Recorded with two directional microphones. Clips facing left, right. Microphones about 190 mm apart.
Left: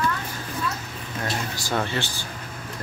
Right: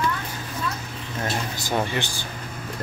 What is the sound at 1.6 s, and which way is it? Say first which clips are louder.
Speech: right 1 dB; 15° right (ahead or behind).